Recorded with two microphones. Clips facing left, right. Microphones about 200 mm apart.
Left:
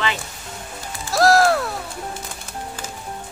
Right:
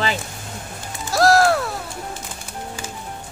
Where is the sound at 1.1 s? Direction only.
Centre (ahead or behind).